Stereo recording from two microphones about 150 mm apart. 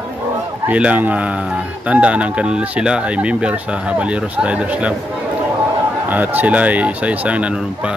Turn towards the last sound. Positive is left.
turn(degrees=-10)  # may be behind; listen again after turning